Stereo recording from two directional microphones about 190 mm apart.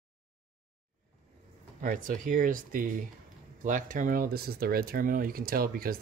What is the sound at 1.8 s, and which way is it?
Speech, 45° right (ahead or behind).